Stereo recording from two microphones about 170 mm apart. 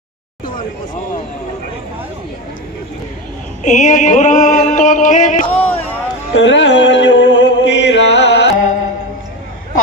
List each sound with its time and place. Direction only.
3.6 s music: 45° left (ahead or behind)
5.5 s a sound: 10° left (ahead or behind)
6.3 s music: 90° left